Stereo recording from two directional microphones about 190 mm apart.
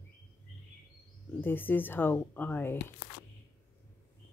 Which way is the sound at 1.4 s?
10° left (ahead or behind).